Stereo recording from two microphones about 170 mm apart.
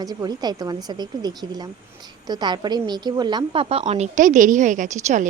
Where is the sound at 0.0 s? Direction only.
20° right (ahead or behind).